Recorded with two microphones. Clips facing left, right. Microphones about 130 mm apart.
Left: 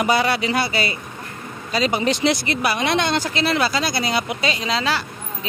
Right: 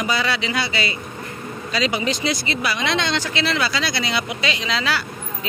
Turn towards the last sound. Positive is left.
turn(degrees=35)  # may be behind; listen again after turning